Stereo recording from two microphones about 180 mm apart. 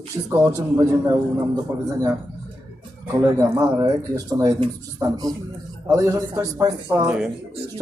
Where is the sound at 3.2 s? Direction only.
15° right (ahead or behind).